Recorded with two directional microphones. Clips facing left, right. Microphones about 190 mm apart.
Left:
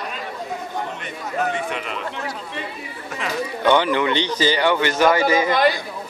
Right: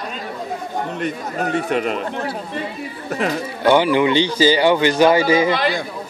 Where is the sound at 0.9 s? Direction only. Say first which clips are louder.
Right 4 dB; 40° right (ahead or behind).